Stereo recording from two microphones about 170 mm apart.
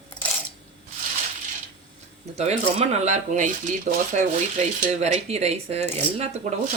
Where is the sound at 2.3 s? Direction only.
40° right (ahead or behind).